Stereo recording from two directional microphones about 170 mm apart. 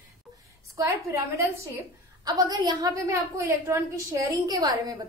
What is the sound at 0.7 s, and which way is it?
Speech, 15° right (ahead or behind).